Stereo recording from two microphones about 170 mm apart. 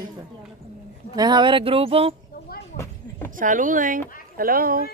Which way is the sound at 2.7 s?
15° left (ahead or behind).